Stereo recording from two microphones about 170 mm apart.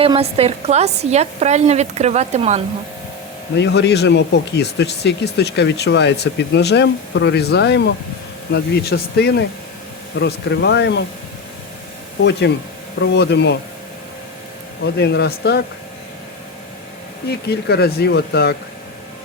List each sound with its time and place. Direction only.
0.0 s a woman's voice: 35° right (ahead or behind)
3.5 s speech: 85° left; by 9.3 s 70° left (ahead or behind)
10.2 s speech: 85° left
12.2 s speech: 85° left
14.9 s speech: 80° left
17.2 s speech: 70° left (ahead or behind)